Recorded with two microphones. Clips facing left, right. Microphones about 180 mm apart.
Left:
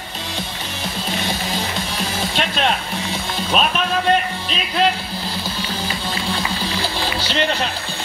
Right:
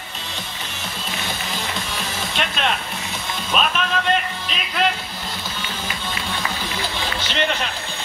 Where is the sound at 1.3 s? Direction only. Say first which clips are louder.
Left 4 dB; 35° left (ahead or behind).